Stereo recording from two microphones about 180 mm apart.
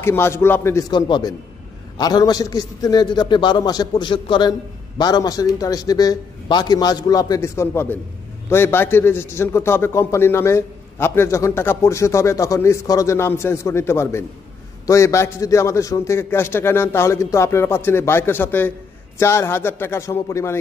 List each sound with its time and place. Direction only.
0.0 s a man's voice: 15° left (ahead or behind)